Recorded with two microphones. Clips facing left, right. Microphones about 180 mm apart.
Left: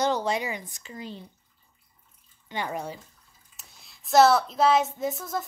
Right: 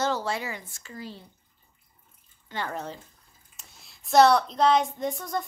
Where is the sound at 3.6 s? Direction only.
Centre (ahead or behind).